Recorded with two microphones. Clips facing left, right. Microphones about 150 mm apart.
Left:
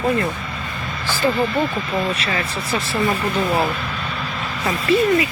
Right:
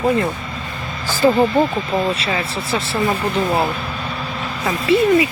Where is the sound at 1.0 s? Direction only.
10° right (ahead or behind).